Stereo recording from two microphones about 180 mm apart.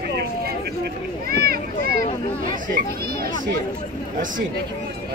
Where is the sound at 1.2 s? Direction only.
60° right (ahead or behind).